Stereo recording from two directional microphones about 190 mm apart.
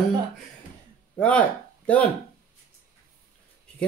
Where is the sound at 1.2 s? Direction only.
5° left (ahead or behind).